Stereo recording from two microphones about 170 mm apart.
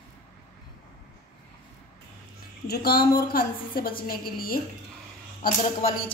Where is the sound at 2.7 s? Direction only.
65° left (ahead or behind).